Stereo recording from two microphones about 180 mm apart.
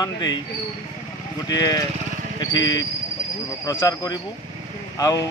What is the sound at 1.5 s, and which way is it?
A man's voice, 20° left (ahead or behind).